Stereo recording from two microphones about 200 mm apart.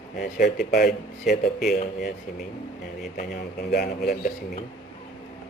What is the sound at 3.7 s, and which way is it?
Speech, 50° left (ahead or behind).